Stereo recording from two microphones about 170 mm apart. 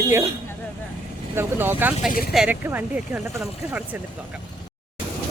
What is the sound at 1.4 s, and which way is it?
Speech, 10° right (ahead or behind).